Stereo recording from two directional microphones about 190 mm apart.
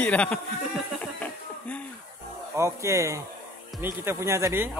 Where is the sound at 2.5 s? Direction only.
15° right (ahead or behind).